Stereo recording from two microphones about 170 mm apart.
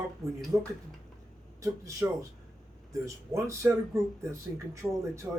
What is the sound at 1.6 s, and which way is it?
Speech, 20° right (ahead or behind).